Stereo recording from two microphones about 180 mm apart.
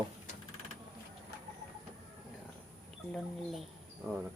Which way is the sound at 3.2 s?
Centre (ahead or behind).